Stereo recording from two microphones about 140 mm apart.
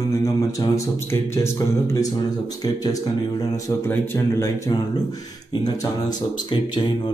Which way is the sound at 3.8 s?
15° left (ahead or behind).